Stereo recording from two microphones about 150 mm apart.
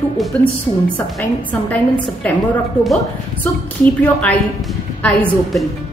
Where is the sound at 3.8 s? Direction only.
10° left (ahead or behind).